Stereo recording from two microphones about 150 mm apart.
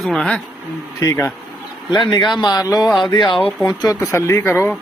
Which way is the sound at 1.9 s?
30° left (ahead or behind).